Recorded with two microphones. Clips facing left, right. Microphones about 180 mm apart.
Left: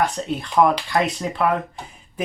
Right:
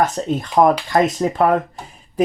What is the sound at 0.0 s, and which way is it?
Speech, 45° right (ahead or behind).